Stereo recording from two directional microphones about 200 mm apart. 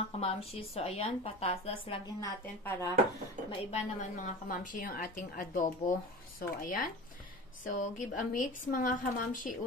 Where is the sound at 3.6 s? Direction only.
40° left (ahead or behind).